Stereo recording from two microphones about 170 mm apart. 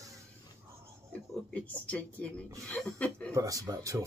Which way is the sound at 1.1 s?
10° left (ahead or behind).